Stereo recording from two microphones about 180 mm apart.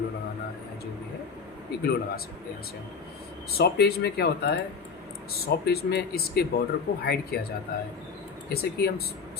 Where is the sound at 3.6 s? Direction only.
60° left (ahead or behind).